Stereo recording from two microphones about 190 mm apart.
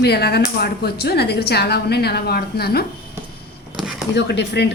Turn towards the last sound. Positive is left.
turn(degrees=65)  # may be behind; listen again after turning